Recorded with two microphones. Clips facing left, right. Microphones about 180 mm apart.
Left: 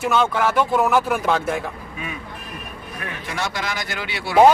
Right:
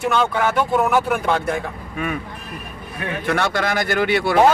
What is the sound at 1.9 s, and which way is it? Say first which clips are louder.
Speech: right 7 dB; 55° right (ahead or behind).